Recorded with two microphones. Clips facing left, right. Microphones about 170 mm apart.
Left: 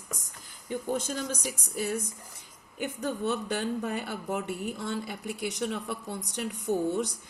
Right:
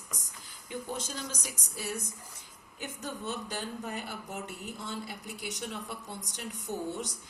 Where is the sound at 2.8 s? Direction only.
60° left (ahead or behind).